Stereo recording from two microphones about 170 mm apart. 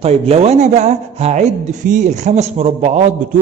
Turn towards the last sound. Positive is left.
turn(degrees=-40)  # may be behind; listen again after turning